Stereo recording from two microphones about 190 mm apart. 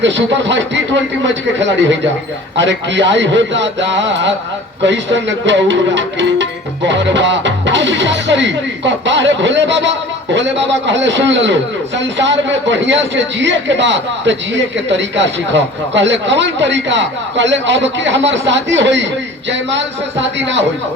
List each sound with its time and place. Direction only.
0.0 s a man's voice: 70° right (ahead or behind)